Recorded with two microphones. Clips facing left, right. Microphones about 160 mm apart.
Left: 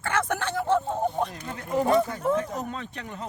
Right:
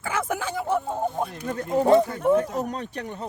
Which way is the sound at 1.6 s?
35° right (ahead or behind).